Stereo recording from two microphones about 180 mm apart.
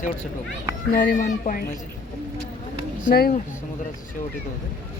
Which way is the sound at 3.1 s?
50° left (ahead or behind).